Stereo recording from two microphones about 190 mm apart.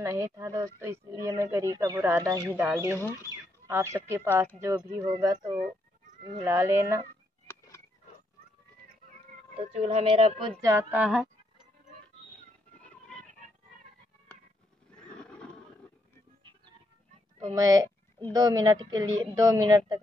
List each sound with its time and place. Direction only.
0.0 s speech: 15° right (ahead or behind)
9.6 s speech: 35° right (ahead or behind)
10.6 s speech: 15° right (ahead or behind)
14.9 s a sound: 5° left (ahead or behind)
17.6 s a woman's voice: 15° right (ahead or behind)